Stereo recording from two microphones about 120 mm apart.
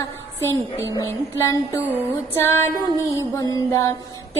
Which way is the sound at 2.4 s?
20° left (ahead or behind).